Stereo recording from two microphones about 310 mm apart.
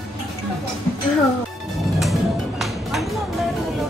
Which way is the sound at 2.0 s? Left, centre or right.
Centre.